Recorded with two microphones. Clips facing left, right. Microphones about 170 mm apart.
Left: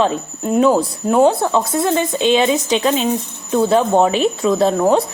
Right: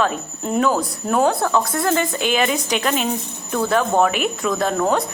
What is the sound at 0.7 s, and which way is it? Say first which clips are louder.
Speech: left 5 dB; 25° left (ahead or behind).